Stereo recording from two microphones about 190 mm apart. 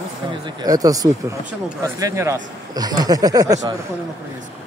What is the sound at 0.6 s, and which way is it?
Speech, 20° right (ahead or behind).